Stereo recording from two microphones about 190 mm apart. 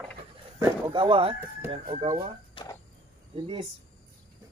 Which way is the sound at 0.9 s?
25° right (ahead or behind).